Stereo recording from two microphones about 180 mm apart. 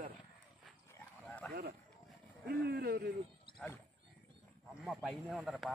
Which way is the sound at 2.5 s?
60° right (ahead or behind).